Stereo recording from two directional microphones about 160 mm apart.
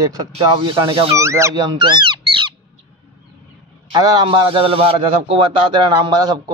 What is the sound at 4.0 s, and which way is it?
A man's voice, 25° right (ahead or behind).